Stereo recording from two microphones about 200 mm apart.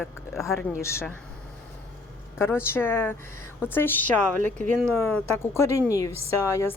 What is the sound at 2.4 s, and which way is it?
Speech, 10° left (ahead or behind).